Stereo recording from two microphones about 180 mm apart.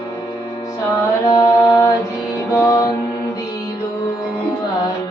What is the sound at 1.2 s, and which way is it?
Mantra, 20° left (ahead or behind).